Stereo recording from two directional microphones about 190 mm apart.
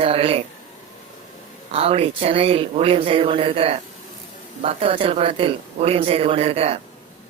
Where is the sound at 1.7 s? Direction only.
30° right (ahead or behind).